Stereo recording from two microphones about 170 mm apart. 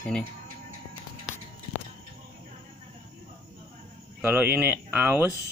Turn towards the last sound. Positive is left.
turn(degrees=-10)  # may be behind; listen again after turning